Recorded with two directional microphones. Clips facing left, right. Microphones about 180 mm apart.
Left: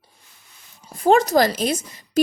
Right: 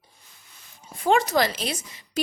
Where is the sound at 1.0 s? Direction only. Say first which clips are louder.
Left 5 dB; 40° left (ahead or behind).